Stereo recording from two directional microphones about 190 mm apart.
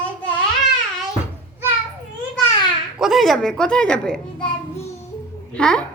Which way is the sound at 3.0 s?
Centre (ahead or behind).